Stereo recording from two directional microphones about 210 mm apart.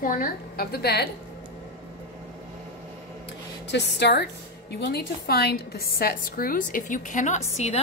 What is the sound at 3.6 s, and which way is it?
A woman's voice, 55° left (ahead or behind).